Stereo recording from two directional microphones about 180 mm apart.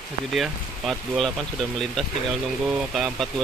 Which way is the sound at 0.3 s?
Centre (ahead or behind).